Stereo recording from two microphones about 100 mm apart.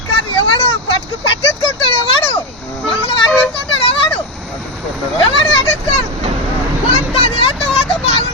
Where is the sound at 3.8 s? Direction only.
65° left (ahead or behind).